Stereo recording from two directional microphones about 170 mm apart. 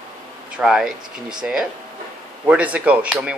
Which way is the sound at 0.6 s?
5° right (ahead or behind).